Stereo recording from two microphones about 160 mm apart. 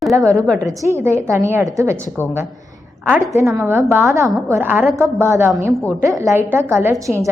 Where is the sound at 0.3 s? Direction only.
5° left (ahead or behind).